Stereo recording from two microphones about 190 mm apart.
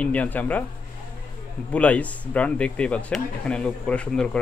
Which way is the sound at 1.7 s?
5° left (ahead or behind).